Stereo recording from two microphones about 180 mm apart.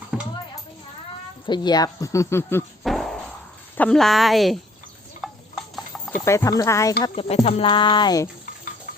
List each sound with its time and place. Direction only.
0.1 s a sound: 5° right (ahead or behind)
1.5 s speech: 25° left (ahead or behind)
2.8 s fart: centre (ahead or behind)
3.8 s speech: 5° left (ahead or behind)
5.2 s stir: centre (ahead or behind)
5.7 s horse: centre (ahead or behind)
6.2 s speech: 15° left (ahead or behind)
7.0 s speech: 30° left (ahead or behind)